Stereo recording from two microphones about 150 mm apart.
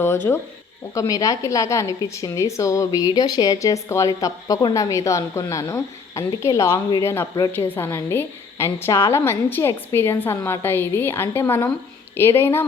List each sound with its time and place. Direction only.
0.3 s a woman's voice: 10° left (ahead or behind)
0.9 s a woman's voice: 20° left (ahead or behind)